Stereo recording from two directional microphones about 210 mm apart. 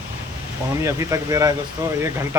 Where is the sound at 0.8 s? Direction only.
15° right (ahead or behind).